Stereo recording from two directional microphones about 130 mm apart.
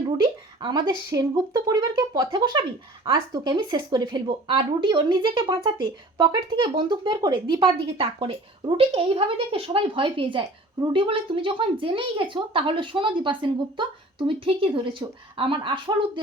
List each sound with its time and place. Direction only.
0.2 s speech: 35° right (ahead or behind)